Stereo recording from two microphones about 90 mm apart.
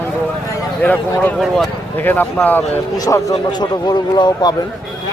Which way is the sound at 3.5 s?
55° left (ahead or behind).